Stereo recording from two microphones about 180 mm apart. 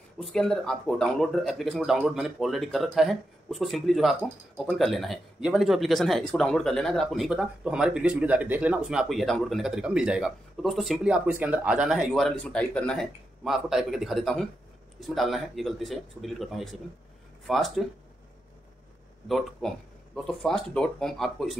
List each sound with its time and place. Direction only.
0.2 s speech: 5° left (ahead or behind)
19.2 s speech: centre (ahead or behind)